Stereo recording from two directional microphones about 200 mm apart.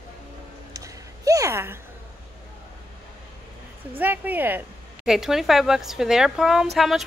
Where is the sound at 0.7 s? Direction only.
15° right (ahead or behind).